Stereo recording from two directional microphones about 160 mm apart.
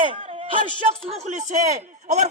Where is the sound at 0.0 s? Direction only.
30° right (ahead or behind).